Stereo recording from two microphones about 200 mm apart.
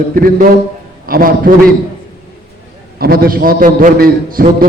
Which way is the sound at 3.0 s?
50° right (ahead or behind).